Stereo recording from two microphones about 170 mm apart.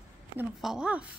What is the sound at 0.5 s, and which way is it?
Speech, 5° right (ahead or behind).